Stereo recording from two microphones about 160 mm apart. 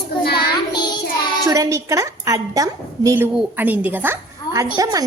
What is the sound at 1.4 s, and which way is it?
A woman's voice, 20° right (ahead or behind).